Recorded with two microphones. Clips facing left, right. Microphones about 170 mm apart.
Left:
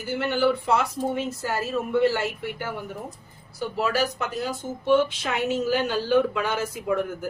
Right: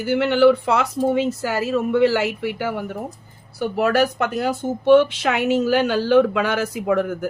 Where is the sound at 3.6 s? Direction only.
60° right (ahead or behind); by 7.3 s 85° right.